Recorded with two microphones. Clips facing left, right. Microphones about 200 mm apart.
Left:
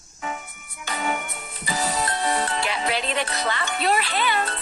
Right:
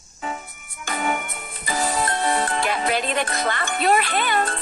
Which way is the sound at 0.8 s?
50° right (ahead or behind).